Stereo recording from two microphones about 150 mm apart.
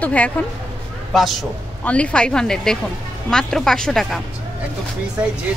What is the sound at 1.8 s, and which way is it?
Speech, 10° left (ahead or behind).